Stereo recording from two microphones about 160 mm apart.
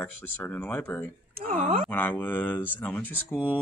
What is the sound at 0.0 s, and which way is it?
Speech, 10° left (ahead or behind).